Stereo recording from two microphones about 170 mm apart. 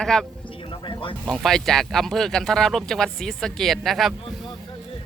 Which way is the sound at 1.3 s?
Centre (ahead or behind).